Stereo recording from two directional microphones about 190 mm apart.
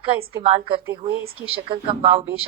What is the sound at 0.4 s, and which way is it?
A woman's voice, 30° right (ahead or behind).